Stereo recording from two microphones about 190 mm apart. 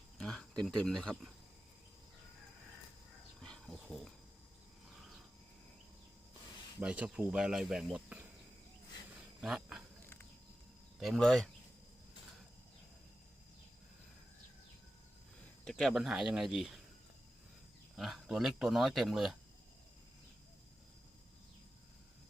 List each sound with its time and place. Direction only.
0.2 s speech: 5° left (ahead or behind)
3.4 s dog: 5° left (ahead or behind)
6.7 s speech: 5° right (ahead or behind)
9.4 s speech: 5° right (ahead or behind)
11.0 s speech: centre (ahead or behind)
15.6 s speech: centre (ahead or behind)
17.9 s speech: centre (ahead or behind)